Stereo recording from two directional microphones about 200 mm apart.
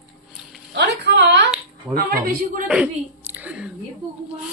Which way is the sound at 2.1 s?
45° right (ahead or behind).